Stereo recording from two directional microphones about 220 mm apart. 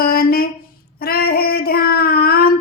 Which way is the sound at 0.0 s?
45° left (ahead or behind).